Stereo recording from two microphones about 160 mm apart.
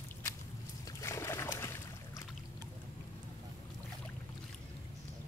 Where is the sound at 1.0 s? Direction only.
15° left (ahead or behind).